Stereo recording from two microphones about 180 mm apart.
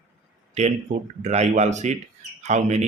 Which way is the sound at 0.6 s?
40° right (ahead or behind).